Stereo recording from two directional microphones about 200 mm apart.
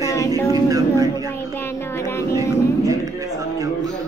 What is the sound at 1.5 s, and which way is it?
Speech, 10° left (ahead or behind).